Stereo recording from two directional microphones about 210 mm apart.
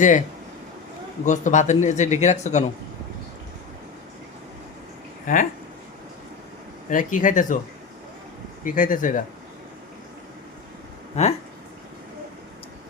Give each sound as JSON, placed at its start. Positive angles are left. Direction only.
{"t": 1.2, "sound": "speech", "side_deg": 35}
{"t": 5.2, "sound": "speech", "side_deg": 40}
{"t": 6.9, "sound": "speech", "side_deg": 40}
{"t": 8.6, "sound": "speech", "side_deg": 40}
{"t": 11.2, "sound": "speech", "side_deg": 30}